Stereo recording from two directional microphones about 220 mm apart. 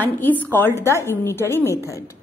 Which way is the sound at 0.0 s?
10° left (ahead or behind).